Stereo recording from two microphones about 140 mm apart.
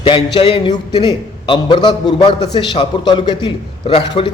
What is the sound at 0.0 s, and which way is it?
A man's voice, 35° left (ahead or behind).